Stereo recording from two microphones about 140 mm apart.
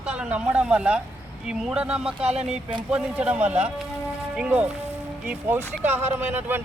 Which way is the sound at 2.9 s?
10° right (ahead or behind).